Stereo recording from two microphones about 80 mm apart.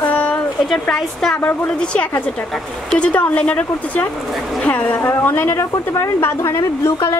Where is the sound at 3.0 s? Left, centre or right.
Centre; by 6.6 s left.